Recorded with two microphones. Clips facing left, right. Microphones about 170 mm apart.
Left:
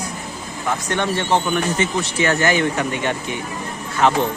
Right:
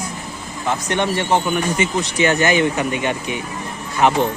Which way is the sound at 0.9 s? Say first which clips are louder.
Right 1 dB; 20° right (ahead or behind).